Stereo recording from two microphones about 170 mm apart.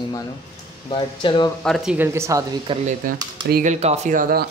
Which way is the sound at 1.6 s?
Centre (ahead or behind).